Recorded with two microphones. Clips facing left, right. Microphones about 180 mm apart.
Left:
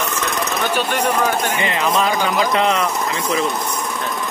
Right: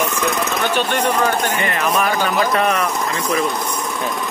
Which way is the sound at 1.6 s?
20° left (ahead or behind).